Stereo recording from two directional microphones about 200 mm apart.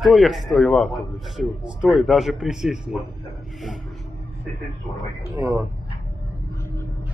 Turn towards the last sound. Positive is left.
turn(degrees=-15)  # may be behind; listen again after turning